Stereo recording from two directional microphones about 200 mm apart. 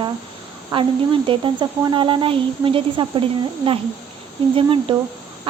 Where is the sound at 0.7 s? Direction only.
25° right (ahead or behind).